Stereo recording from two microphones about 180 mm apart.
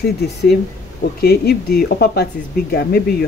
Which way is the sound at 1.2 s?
60° left (ahead or behind).